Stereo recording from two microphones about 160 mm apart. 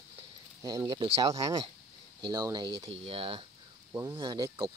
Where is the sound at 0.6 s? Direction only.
25° right (ahead or behind).